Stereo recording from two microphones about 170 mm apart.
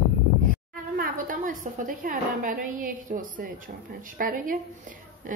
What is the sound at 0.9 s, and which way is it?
A woman's voice, 55° right (ahead or behind).